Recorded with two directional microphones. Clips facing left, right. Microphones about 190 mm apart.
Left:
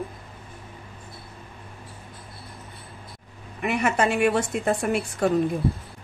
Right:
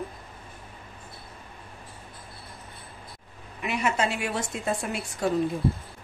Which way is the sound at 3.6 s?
55° left (ahead or behind).